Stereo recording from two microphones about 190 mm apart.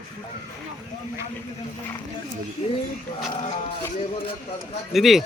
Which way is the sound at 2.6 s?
35° left (ahead or behind).